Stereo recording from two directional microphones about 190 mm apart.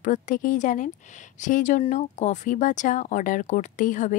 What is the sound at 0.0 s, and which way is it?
A woman's voice, 40° left (ahead or behind).